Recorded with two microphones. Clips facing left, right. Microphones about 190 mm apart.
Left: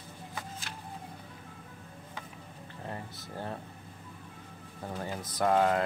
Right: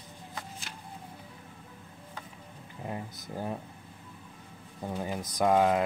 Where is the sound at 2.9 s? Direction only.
15° right (ahead or behind).